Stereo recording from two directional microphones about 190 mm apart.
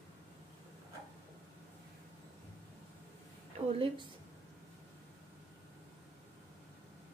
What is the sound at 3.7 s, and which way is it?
Speech, 30° right (ahead or behind).